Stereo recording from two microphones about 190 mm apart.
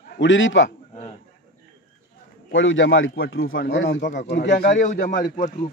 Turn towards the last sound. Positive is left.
turn(degrees=50)  # may be behind; listen again after turning